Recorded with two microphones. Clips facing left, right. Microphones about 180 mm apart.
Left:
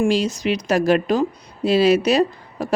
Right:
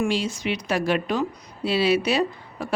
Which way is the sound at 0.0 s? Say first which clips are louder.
Left 6 dB; 40° left (ahead or behind).